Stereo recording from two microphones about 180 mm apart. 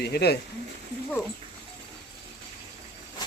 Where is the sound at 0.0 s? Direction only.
65° left (ahead or behind).